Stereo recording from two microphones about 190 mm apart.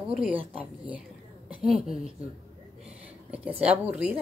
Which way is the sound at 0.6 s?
5° right (ahead or behind).